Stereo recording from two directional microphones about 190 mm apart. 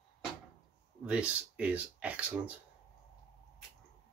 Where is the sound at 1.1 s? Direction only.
5° right (ahead or behind).